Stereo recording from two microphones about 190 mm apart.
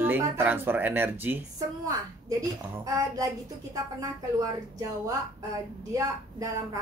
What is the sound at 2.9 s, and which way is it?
A man's voice, 15° right (ahead or behind).